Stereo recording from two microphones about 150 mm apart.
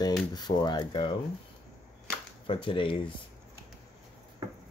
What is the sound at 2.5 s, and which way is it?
Speech, 35° left (ahead or behind).